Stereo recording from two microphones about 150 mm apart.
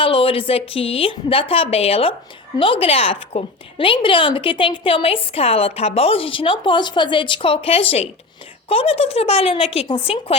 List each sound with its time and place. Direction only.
0.0 s speech: 35° left (ahead or behind)